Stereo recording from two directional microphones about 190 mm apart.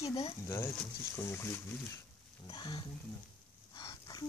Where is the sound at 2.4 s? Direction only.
20° left (ahead or behind).